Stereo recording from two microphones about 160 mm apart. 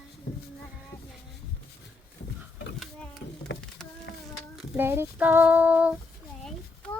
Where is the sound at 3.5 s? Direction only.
90° left.